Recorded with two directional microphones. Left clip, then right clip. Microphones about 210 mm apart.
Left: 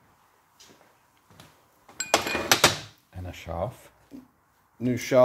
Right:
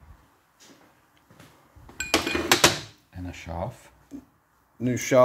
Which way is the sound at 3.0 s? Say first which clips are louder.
Even; 40° left (ahead or behind).